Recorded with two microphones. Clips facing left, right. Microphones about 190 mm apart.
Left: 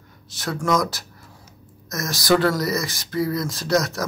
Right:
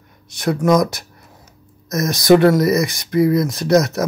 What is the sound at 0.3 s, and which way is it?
Speech, 20° right (ahead or behind).